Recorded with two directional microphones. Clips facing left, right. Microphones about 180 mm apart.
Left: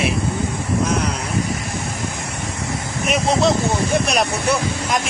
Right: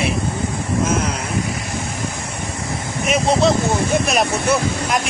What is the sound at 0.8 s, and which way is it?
Speech, centre (ahead or behind).